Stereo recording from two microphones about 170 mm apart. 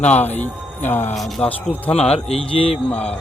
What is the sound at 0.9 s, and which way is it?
Speech, 10° left (ahead or behind).